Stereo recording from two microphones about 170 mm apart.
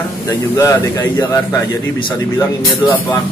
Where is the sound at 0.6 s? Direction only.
15° left (ahead or behind).